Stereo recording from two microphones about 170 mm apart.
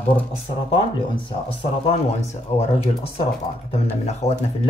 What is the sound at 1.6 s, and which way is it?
Speech, 35° left (ahead or behind).